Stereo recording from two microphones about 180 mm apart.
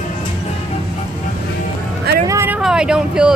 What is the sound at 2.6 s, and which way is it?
Speech, 5° right (ahead or behind).